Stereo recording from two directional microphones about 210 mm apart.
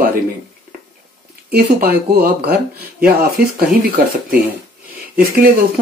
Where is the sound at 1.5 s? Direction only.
50° right (ahead or behind).